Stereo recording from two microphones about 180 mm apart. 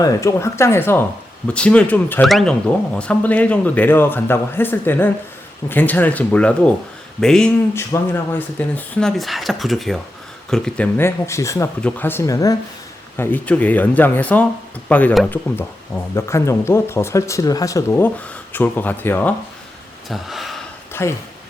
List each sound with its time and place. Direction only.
0.0 s speech: 15° left (ahead or behind)
20.1 s speech: centre (ahead or behind)
21.0 s speech: 15° left (ahead or behind)